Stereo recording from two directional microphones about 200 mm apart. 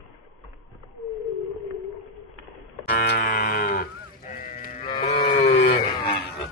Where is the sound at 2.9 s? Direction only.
55° left (ahead or behind).